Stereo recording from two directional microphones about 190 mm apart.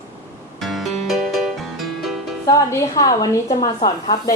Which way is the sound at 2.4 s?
20° left (ahead or behind).